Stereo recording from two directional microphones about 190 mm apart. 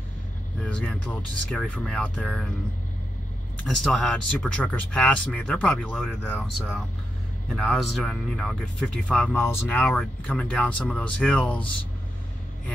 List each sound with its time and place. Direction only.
0.7 s speech: 5° left (ahead or behind)
3.6 s speech: 5° left (ahead or behind)